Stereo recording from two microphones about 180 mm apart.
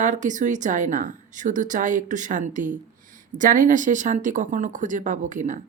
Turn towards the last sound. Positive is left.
turn(degrees=-45)  # may be behind; listen again after turning